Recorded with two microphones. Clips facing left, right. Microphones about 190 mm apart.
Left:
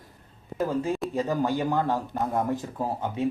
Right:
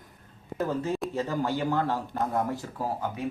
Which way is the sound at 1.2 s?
15° left (ahead or behind).